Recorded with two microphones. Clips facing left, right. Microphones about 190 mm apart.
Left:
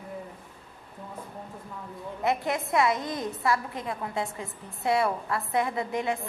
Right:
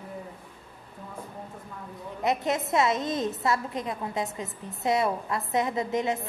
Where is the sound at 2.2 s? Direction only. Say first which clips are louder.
Right 1 dB; 20° right (ahead or behind).